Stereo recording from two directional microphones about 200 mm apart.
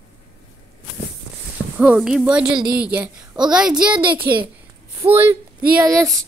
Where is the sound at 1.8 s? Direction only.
5° right (ahead or behind).